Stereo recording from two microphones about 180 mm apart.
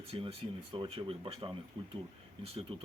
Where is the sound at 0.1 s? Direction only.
30° right (ahead or behind).